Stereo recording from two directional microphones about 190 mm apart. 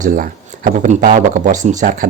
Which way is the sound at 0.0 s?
45° right (ahead or behind).